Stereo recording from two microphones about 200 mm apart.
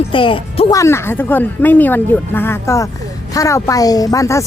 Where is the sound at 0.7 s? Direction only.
15° left (ahead or behind).